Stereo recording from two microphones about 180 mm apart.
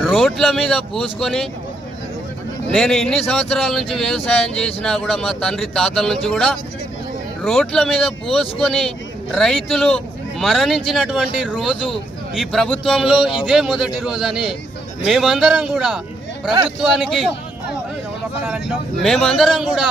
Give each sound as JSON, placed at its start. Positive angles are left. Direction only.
{"t": 0.0, "sound": "speech", "side_deg": 0}
{"t": 2.7, "sound": "speech", "side_deg": 0}
{"t": 19.0, "sound": "speech", "side_deg": 0}